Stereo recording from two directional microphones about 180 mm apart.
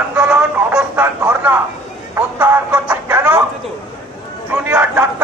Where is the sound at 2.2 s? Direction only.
10° right (ahead or behind).